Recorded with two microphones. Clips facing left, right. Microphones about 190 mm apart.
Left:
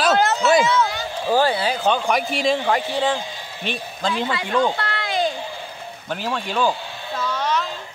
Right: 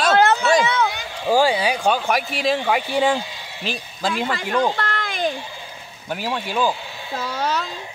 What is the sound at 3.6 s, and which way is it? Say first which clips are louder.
Speech: even; centre (ahead or behind).